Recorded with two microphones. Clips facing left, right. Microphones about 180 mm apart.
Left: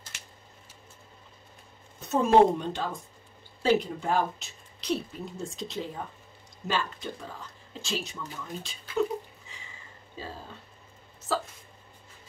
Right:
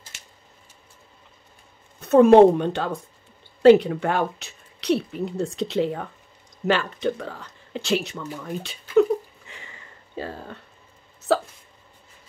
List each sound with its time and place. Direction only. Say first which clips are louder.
2.0 s a woman's voice: right 8 dB; 60° right (ahead or behind)
9.5 s sniff: right 6 dB; 65° right (ahead or behind)
10.1 s a woman's voice: right 8 dB; 65° right (ahead or behind)
11.3 s hiccup: right 9 dB; 70° right (ahead or behind)